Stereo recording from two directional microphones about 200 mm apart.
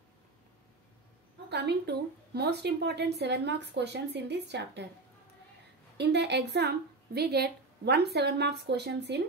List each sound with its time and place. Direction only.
1.5 s a woman's voice: 55° right (ahead or behind)
5.9 s a woman's voice: 60° right (ahead or behind)